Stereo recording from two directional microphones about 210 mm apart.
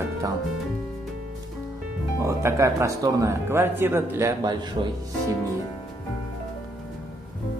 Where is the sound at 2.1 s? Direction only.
15° right (ahead or behind).